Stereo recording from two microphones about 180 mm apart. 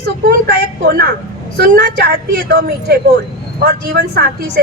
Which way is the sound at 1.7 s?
55° right (ahead or behind).